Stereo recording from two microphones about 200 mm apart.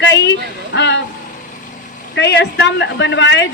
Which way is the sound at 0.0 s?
65° left (ahead or behind).